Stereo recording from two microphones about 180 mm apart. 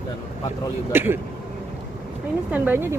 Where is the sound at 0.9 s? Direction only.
10° right (ahead or behind).